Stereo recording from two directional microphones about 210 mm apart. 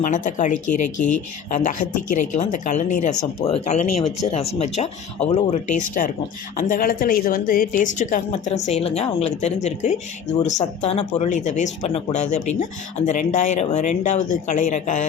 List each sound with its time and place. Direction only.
0.0 s a woman's voice: 35° left (ahead or behind)